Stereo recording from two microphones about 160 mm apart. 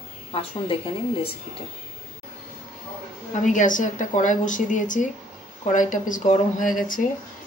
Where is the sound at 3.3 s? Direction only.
50° left (ahead or behind).